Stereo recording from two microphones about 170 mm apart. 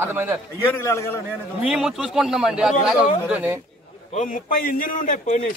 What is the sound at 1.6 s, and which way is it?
A man's voice, 5° right (ahead or behind).